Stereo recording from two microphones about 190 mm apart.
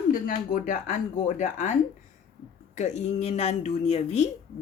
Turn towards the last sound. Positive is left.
turn(degrees=35)  # may be behind; listen again after turning